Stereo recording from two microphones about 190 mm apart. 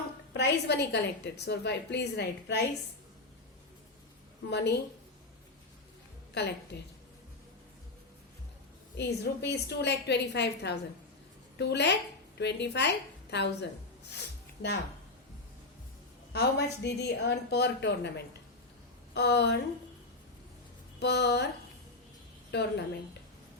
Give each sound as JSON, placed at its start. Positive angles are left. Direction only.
{"t": 0.3, "sound": "a woman's voice", "side_deg": 60}
{"t": 4.4, "sound": "a woman's voice", "side_deg": 65}
{"t": 6.4, "sound": "a woman's voice", "side_deg": 60}
{"t": 9.0, "sound": "a woman's voice", "side_deg": 60}
{"t": 14.1, "sound": "music", "side_deg": 60}
{"t": 16.3, "sound": "a woman's voice", "side_deg": 60}
{"t": 19.1, "sound": "a woman's voice", "side_deg": 60}
{"t": 21.0, "sound": "a woman's voice", "side_deg": 60}
{"t": 22.5, "sound": "a woman's voice", "side_deg": 60}